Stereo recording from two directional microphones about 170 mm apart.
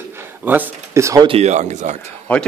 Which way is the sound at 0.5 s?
15° right (ahead or behind).